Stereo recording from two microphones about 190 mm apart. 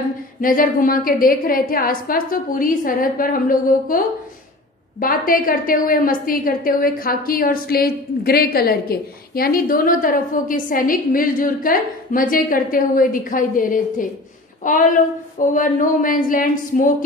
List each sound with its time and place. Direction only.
0.4 s a woman's voice: 45° left (ahead or behind)
5.0 s a woman's voice: 50° left (ahead or behind)